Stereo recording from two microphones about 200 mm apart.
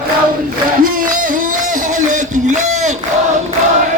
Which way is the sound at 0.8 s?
40° right (ahead or behind).